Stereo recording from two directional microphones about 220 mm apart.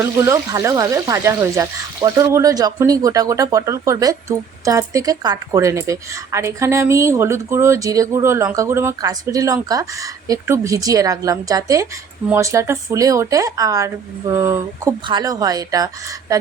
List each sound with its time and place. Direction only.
0.0 s speech: 15° right (ahead or behind)